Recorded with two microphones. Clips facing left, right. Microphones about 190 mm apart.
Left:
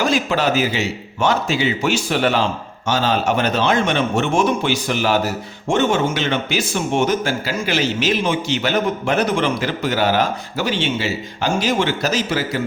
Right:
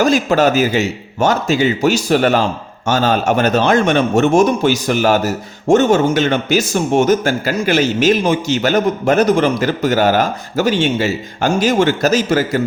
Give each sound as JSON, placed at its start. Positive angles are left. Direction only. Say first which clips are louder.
{"t": 0.0, "sound": "a man's voice", "louder": "right 6 dB", "side_deg": -45}